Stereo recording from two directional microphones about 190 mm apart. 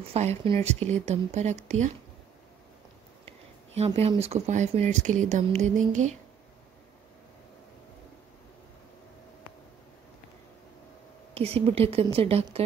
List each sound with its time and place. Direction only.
0.1 s speech: 35° right (ahead or behind)
3.3 s speech: 35° right (ahead or behind)
11.3 s speech: 30° right (ahead or behind)